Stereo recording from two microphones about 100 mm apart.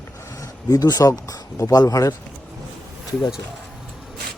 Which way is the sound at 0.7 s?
35° left (ahead or behind).